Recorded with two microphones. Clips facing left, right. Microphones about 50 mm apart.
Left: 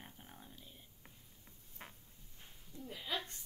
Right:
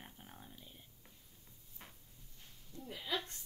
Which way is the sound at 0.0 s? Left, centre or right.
Centre.